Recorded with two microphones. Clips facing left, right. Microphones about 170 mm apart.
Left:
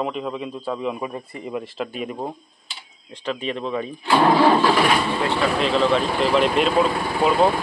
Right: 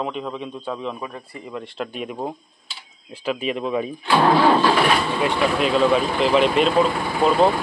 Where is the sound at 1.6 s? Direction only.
Centre (ahead or behind).